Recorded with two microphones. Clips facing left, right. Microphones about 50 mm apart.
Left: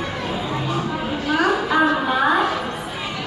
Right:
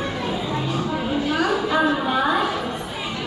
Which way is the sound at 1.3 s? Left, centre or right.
Left.